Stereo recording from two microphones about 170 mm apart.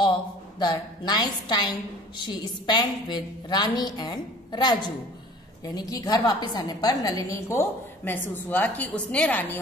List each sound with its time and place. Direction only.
0.0 s a woman's voice: 25° left (ahead or behind); by 9.6 s 10° left (ahead or behind)